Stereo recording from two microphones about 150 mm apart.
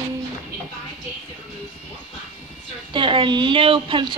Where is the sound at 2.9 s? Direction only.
35° right (ahead or behind).